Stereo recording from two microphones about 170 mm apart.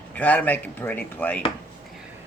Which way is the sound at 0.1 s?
10° left (ahead or behind).